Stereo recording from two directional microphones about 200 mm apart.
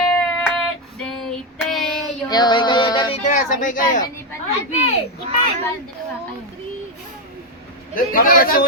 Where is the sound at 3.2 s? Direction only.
40° left (ahead or behind).